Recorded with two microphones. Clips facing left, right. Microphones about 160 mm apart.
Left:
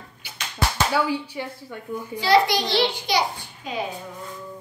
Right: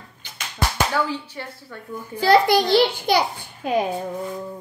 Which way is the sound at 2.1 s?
50° right (ahead or behind).